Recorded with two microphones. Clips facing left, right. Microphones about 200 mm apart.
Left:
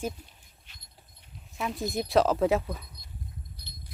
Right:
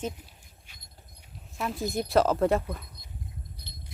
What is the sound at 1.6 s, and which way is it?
Speech, centre (ahead or behind).